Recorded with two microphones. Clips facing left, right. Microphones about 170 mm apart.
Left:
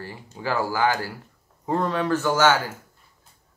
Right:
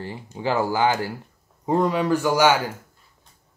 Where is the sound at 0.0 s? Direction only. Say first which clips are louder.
Right 4 dB; 20° right (ahead or behind).